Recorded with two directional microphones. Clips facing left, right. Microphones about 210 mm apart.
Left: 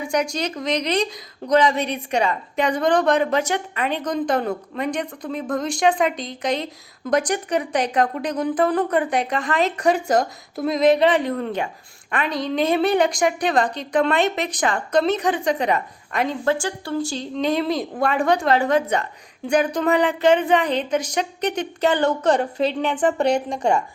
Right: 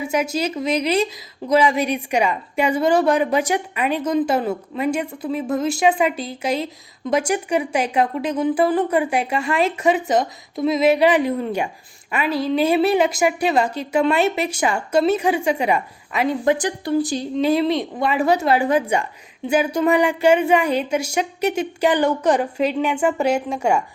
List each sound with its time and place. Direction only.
0.0 s a woman's voice: 5° right (ahead or behind)
17.3 s a woman's voice: 5° right (ahead or behind)